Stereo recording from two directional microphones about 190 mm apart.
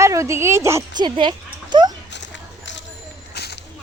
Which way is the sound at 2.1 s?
70° left (ahead or behind).